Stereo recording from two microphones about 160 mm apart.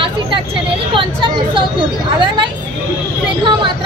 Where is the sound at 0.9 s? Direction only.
30° right (ahead or behind).